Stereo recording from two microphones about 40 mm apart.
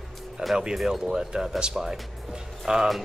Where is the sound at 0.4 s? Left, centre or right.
Right.